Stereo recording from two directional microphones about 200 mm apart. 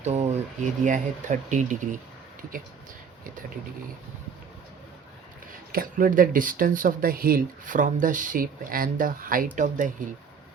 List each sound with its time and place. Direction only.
0.0 s speech: 35° right (ahead or behind)
5.7 s speech: 45° right (ahead or behind)